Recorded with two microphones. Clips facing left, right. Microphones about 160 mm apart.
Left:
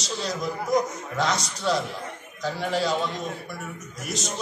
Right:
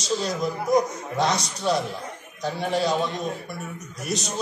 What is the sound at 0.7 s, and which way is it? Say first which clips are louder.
Speech: right 2 dB; 15° right (ahead or behind).